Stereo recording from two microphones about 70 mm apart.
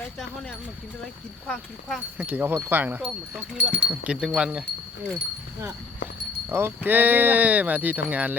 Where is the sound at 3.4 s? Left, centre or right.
Centre.